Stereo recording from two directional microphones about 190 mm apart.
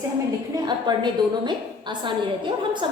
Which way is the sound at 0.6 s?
25° right (ahead or behind).